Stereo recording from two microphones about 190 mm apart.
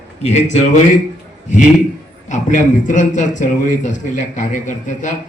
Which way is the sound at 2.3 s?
40° left (ahead or behind).